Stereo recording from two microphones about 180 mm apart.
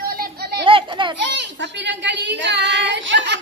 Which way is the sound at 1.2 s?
80° right.